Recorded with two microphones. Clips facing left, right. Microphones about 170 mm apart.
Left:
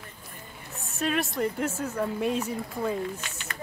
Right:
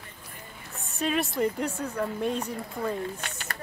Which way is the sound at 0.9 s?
Centre (ahead or behind).